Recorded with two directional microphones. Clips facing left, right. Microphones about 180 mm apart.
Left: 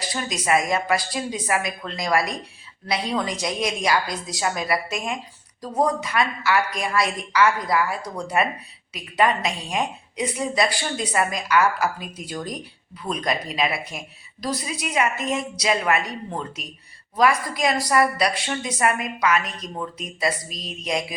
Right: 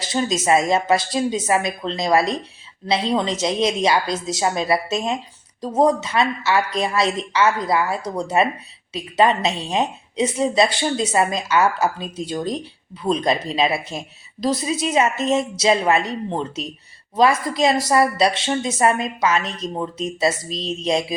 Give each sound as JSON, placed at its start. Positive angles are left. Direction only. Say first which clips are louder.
{"t": 0.0, "sound": "a woman's voice", "louder": "right 7 dB", "side_deg": -25}